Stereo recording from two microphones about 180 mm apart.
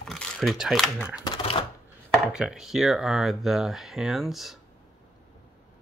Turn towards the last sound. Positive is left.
turn(degrees=0)  # may be behind; listen again after turning